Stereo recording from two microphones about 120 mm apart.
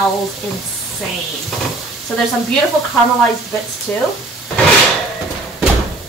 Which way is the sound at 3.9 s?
10° left (ahead or behind).